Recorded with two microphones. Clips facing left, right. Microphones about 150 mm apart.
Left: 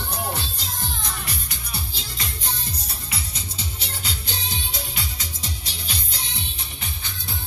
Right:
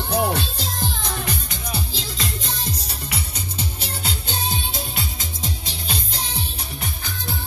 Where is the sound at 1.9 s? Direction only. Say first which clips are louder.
Right 6 dB; 90° right.